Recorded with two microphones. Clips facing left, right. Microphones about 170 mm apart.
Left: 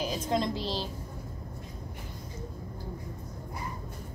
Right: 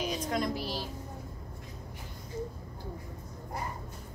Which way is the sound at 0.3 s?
25° left (ahead or behind).